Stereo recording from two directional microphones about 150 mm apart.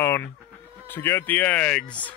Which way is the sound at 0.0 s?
15° left (ahead or behind).